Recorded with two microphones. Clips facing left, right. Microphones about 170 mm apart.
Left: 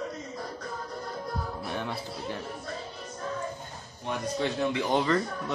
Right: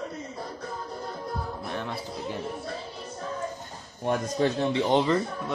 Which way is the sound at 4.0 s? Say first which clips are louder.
Right 5 dB; 45° right (ahead or behind).